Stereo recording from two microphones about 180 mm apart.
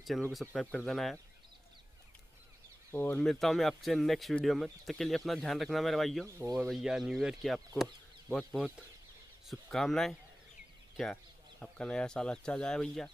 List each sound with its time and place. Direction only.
0.0 s speech: centre (ahead or behind)
2.9 s speech: 10° left (ahead or behind)
6.2 s speech: 15° right (ahead or behind)
6.7 s speech: centre (ahead or behind)
11.6 s speech: 5° left (ahead or behind)